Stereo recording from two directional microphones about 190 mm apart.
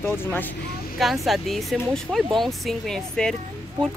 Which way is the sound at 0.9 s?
Centre (ahead or behind).